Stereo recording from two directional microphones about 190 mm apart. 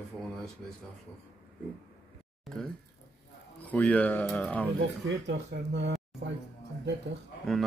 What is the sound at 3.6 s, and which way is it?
Speech, 5° left (ahead or behind).